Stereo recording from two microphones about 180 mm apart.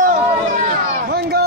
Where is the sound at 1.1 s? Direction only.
60° right (ahead or behind).